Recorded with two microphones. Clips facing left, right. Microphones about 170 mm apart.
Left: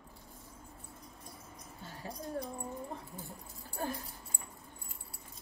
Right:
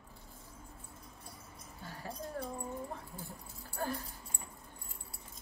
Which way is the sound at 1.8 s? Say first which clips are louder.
Even; 15° left (ahead or behind).